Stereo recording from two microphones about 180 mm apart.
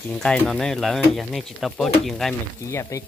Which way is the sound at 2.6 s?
15° left (ahead or behind).